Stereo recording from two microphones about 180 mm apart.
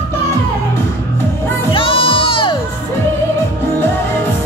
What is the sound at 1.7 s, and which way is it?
Music, 30° left (ahead or behind).